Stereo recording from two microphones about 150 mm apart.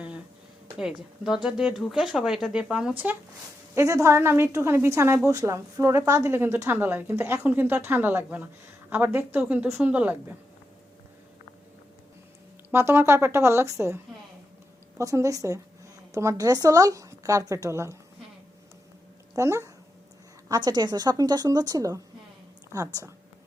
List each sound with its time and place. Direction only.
0.8 s speech: 5° right (ahead or behind)
3.8 s a woman's voice: 20° right (ahead or behind)
12.7 s a woman's voice: 15° right (ahead or behind)
19.4 s a woman's voice: 20° right (ahead or behind)